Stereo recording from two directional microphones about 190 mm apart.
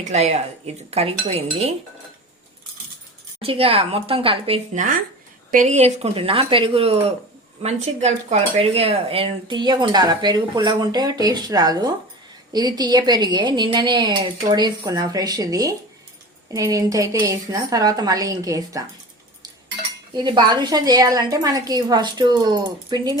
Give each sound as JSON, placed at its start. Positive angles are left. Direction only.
{"t": 0.0, "sound": "speech", "side_deg": -35}
{"t": 3.4, "sound": "a woman's voice", "side_deg": -30}
{"t": 20.1, "sound": "speech", "side_deg": -25}